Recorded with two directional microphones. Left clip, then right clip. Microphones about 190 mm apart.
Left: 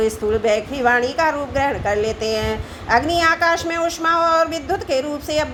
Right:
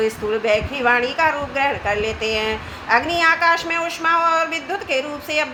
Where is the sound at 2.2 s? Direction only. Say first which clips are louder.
Even; 55° left (ahead or behind).